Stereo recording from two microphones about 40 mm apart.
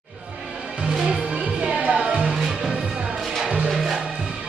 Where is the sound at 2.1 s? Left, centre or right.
Centre.